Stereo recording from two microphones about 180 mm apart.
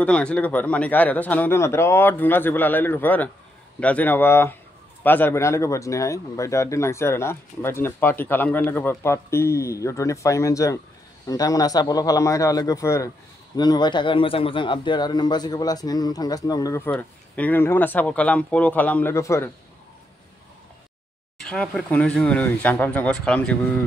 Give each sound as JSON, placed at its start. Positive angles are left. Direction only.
{"t": 0.0, "sound": "speech", "side_deg": 5}
{"t": 21.4, "sound": "speech", "side_deg": 5}